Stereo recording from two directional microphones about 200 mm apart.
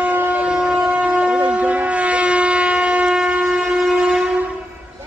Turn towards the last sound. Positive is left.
turn(degrees=-5)  # may be behind; listen again after turning